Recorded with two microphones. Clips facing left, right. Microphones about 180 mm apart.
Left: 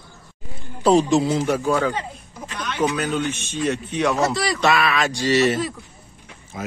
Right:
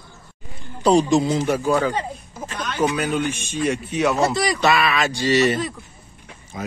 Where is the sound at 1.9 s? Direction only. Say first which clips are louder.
Right 2 dB; 40° right (ahead or behind).